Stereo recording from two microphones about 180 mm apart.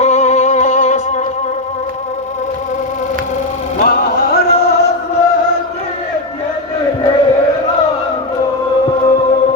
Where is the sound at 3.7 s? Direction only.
60° left (ahead or behind).